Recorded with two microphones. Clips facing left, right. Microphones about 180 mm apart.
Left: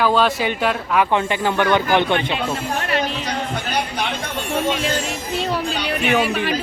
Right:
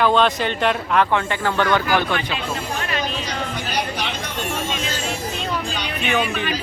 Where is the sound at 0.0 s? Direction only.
5° left (ahead or behind).